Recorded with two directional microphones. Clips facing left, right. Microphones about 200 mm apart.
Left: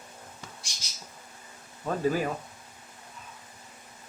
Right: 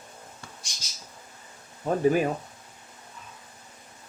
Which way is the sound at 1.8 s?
20° right (ahead or behind).